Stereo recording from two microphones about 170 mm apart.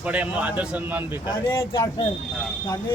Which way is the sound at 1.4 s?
15° left (ahead or behind).